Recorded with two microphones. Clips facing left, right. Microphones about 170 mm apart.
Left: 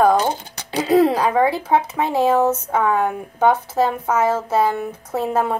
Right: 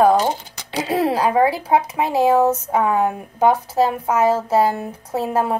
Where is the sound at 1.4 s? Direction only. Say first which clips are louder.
Right 1 dB; 10° right (ahead or behind).